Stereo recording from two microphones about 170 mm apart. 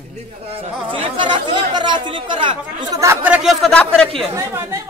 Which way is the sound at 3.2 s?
10° right (ahead or behind).